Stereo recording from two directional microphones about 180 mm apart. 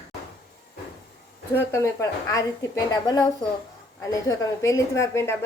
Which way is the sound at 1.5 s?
15° left (ahead or behind).